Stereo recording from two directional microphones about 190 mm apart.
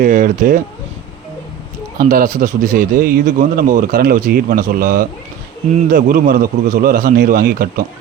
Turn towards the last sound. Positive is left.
turn(degrees=-50)  # may be behind; listen again after turning